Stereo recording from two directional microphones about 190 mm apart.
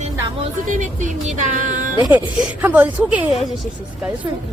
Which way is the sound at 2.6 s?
10° right (ahead or behind).